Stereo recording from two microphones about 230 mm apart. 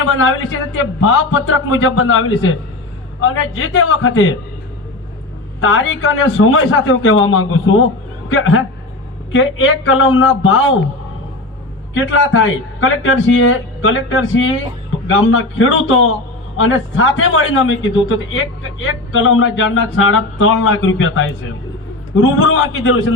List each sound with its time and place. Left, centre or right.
0.2 s a man's voice: left
5.5 s a man's voice: left
11.9 s a man's voice: left
22.4 s a man's voice: left